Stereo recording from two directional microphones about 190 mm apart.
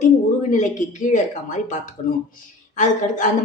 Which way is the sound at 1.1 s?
40° left (ahead or behind).